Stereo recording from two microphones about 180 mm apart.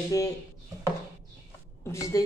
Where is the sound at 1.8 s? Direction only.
15° left (ahead or behind).